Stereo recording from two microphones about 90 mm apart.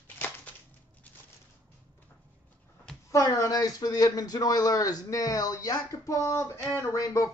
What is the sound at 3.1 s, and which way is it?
Speech, 35° left (ahead or behind).